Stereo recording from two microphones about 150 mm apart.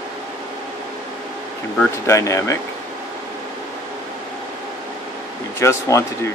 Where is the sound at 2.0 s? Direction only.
20° left (ahead or behind).